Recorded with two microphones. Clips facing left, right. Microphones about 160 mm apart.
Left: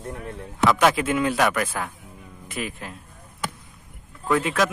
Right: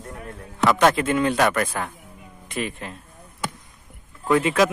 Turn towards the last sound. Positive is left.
turn(degrees=-5)  # may be behind; listen again after turning